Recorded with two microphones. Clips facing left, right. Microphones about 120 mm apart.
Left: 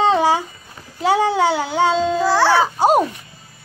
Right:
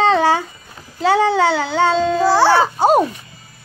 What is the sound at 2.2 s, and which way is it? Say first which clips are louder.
Baby cry: right 3 dB; 15° right (ahead or behind).